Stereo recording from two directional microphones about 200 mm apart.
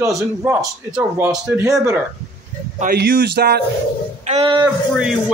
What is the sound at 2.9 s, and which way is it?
Speech, 55° right (ahead or behind).